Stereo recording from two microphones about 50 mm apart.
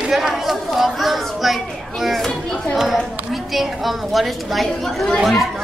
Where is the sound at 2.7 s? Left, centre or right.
Centre.